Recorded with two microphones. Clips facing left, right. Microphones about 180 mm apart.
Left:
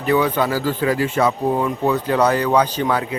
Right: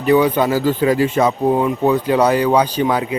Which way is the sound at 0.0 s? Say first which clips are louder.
Right 4 dB; 15° right (ahead or behind).